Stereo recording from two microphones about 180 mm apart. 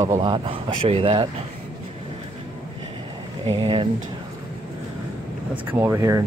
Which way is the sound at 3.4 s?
30° right (ahead or behind).